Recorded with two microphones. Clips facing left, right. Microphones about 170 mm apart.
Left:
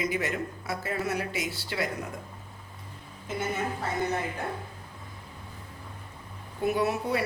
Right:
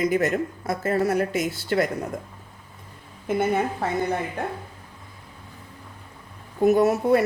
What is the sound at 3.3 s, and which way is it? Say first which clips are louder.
Speech: right 8 dB; 55° right (ahead or behind).